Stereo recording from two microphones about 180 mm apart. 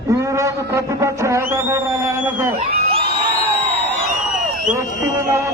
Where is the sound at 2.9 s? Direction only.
30° right (ahead or behind).